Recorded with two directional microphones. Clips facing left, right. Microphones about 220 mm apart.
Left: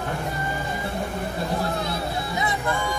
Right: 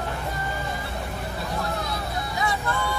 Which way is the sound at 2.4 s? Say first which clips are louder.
Even; 20° left (ahead or behind).